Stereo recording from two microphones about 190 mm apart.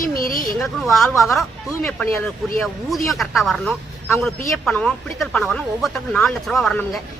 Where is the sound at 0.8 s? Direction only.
Centre (ahead or behind).